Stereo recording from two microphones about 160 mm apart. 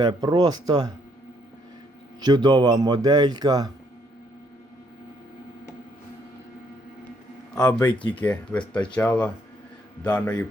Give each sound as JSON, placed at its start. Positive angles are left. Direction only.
{"t": 0.0, "sound": "speech", "side_deg": -25}
{"t": 2.2, "sound": "speech", "side_deg": -25}
{"t": 7.5, "sound": "speech", "side_deg": 10}
{"t": 7.9, "sound": "speech", "side_deg": 30}
{"t": 8.2, "sound": "speech", "side_deg": 10}